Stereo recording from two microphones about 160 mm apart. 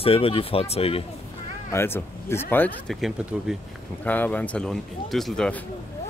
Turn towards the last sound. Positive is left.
turn(degrees=5)  # may be behind; listen again after turning